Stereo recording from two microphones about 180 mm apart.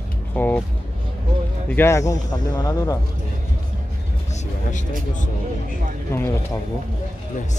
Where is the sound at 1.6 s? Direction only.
10° left (ahead or behind).